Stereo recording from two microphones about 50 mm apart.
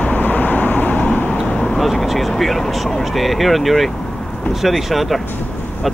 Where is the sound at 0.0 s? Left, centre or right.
Left.